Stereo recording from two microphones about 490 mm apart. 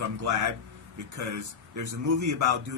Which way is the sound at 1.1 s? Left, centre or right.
Right.